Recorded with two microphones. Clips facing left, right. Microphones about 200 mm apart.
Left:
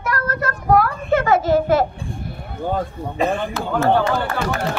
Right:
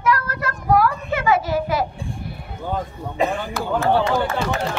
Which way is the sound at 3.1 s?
15° right (ahead or behind).